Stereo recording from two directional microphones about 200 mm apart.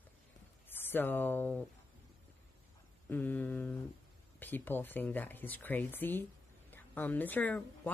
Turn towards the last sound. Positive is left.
turn(degrees=10)  # may be behind; listen again after turning